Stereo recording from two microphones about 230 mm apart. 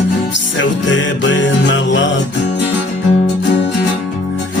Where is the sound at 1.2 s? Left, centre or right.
Left.